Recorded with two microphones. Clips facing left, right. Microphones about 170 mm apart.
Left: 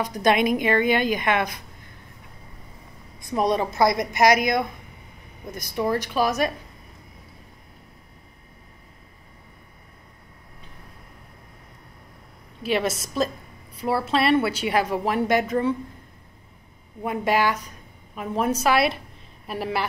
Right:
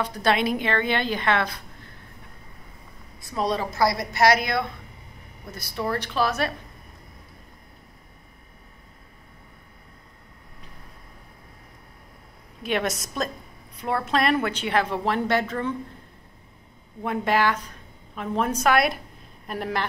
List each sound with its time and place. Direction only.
0.0 s a woman's voice: 15° left (ahead or behind)
3.2 s a woman's voice: 20° left (ahead or behind)
12.6 s a woman's voice: 5° left (ahead or behind)
17.0 s a woman's voice: 10° left (ahead or behind)